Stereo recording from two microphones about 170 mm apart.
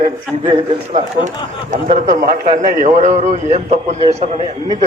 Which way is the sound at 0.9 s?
45° right (ahead or behind).